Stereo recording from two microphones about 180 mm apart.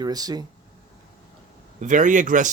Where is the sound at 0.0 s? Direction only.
20° right (ahead or behind).